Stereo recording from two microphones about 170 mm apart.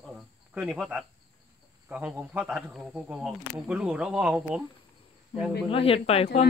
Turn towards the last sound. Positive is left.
turn(degrees=35)  # may be behind; listen again after turning